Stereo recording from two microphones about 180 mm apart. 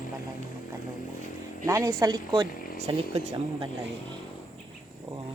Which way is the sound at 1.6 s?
15° right (ahead or behind).